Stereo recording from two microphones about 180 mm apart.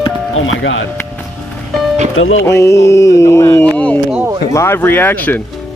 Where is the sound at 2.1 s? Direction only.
90° left.